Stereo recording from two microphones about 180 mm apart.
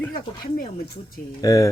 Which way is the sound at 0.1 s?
50° left (ahead or behind).